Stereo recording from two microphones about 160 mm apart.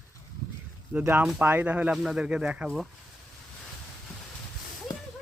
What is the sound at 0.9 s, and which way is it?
Speech, 10° right (ahead or behind).